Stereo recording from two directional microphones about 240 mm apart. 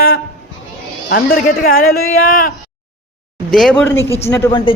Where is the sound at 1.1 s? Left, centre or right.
Left.